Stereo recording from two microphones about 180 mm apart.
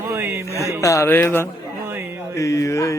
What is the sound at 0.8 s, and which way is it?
Speech, 15° left (ahead or behind).